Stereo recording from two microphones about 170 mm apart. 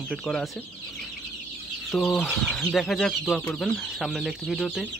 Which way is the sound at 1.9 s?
Centre (ahead or behind).